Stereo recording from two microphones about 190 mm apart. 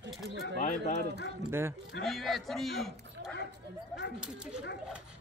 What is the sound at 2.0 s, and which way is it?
Speech, centre (ahead or behind).